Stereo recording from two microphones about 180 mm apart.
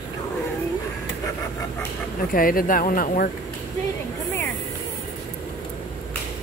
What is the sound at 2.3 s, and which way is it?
Speech, 50° left (ahead or behind).